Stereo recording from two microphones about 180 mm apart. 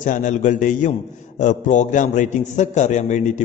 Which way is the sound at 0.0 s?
45° left (ahead or behind).